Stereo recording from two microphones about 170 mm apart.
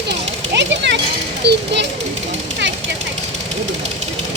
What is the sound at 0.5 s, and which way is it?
A child's voice, 90° right.